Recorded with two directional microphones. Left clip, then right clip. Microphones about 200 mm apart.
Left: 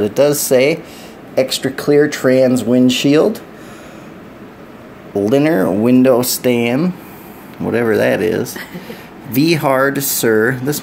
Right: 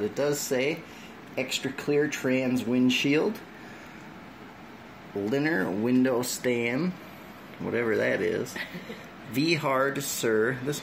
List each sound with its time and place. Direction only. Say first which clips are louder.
0.1 s speech: left 15 dB; 45° left (ahead or behind)
1.3 s speech: left 15 dB; 30° left (ahead or behind)
5.2 s speech: left 14 dB; 30° left (ahead or behind)